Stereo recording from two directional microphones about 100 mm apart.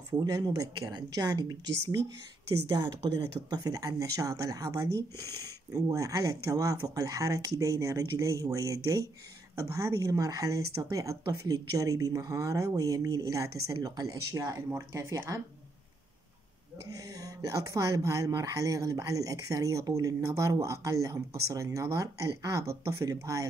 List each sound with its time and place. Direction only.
0.2 s speech: 40° right (ahead or behind)
17.1 s speech: 35° right (ahead or behind)